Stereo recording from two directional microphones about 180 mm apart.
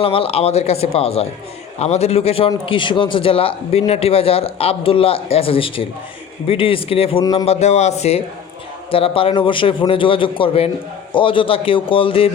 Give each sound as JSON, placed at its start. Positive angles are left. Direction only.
{"t": 0.0, "sound": "speech", "side_deg": 30}
{"t": 7.4, "sound": "a man's voice", "side_deg": 35}